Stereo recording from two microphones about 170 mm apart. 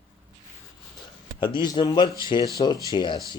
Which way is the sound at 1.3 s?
30° left (ahead or behind).